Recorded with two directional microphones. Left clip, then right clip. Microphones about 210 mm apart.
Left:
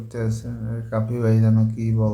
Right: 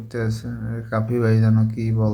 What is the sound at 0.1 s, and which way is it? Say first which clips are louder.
A man's voice: right 2 dB; 10° right (ahead or behind).